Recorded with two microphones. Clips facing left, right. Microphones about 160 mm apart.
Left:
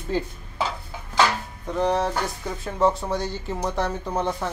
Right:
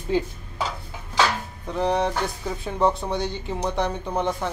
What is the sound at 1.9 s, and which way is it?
Speech, centre (ahead or behind).